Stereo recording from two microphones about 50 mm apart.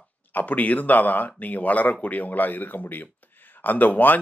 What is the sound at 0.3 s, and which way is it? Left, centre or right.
Speech, left.